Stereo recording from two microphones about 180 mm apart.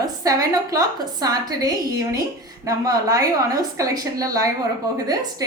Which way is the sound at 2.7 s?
20° right (ahead or behind).